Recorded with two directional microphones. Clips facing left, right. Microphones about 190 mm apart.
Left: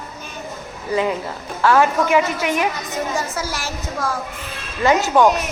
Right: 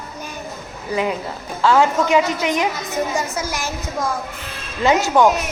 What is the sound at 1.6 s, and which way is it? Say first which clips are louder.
A woman's voice: even; 15° right (ahead or behind).